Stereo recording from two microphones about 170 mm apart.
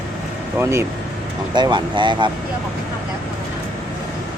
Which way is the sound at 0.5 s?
15° right (ahead or behind).